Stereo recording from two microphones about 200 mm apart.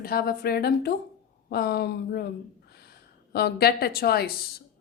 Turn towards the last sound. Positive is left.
turn(degrees=50)  # may be behind; listen again after turning